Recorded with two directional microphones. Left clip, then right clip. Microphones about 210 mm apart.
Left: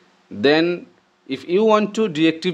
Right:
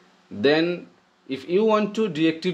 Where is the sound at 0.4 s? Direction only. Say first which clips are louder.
Left 4 dB; 20° left (ahead or behind).